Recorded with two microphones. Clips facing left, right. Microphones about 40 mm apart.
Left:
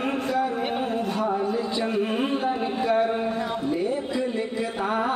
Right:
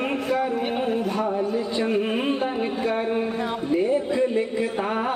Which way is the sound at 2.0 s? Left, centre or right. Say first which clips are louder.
Right 1 dB; right.